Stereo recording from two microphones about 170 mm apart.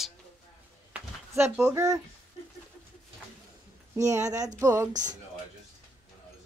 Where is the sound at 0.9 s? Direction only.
15° right (ahead or behind).